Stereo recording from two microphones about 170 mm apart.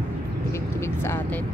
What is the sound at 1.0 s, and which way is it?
Speech, 10° left (ahead or behind).